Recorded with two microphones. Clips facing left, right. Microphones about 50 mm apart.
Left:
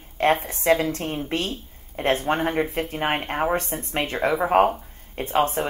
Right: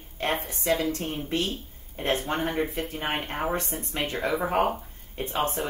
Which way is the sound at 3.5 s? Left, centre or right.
Left.